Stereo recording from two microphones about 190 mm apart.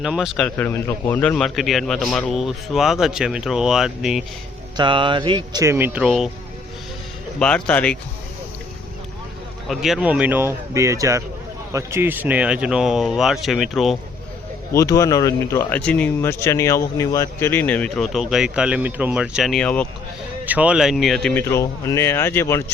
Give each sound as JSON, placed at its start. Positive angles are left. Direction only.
{"t": 0.0, "sound": "a man's voice", "side_deg": 0}
{"t": 4.8, "sound": "speech", "side_deg": -25}
{"t": 5.6, "sound": "a man's voice", "side_deg": -10}
{"t": 7.3, "sound": "a man's voice", "side_deg": 5}
{"t": 9.6, "sound": "a man's voice", "side_deg": 0}
{"t": 14.7, "sound": "speech", "side_deg": 15}
{"t": 20.4, "sound": "a man's voice", "side_deg": -10}
{"t": 21.5, "sound": "speech", "side_deg": 15}